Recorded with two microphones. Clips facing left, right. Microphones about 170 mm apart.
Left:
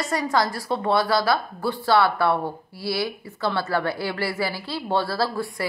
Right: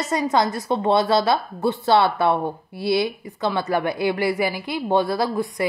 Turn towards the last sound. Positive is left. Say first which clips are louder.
# right 3 dB
turn(degrees=-20)  # may be behind; listen again after turning